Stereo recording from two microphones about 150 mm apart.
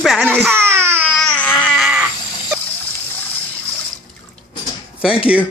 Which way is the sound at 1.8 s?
5° right (ahead or behind).